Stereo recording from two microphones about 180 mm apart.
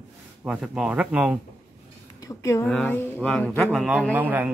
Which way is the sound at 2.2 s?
15° left (ahead or behind).